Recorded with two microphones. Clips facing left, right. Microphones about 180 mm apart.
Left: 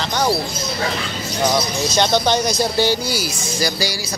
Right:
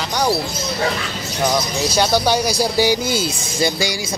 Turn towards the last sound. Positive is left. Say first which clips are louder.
# right 2 dB
turn(degrees=-25)  # may be behind; listen again after turning